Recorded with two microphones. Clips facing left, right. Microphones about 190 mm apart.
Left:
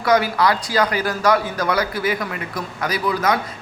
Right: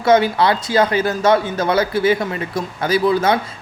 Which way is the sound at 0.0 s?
25° right (ahead or behind).